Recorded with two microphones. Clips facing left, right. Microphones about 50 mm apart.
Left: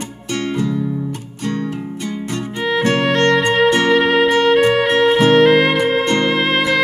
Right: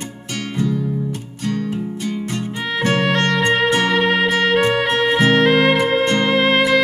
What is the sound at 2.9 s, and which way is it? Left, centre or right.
Music, centre.